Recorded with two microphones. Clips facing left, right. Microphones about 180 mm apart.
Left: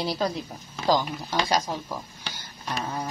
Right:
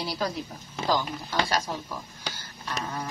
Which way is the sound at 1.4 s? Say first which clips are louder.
Left 3 dB; 15° left (ahead or behind).